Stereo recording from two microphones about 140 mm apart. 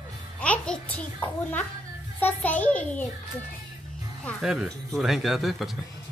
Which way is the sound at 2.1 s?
10° left (ahead or behind).